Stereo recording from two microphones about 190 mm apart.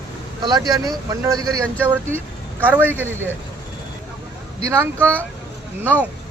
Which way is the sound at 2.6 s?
10° right (ahead or behind).